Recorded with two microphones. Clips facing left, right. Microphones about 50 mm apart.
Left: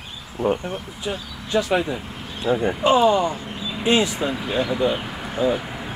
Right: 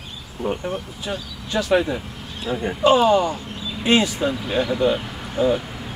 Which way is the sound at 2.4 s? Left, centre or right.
Centre.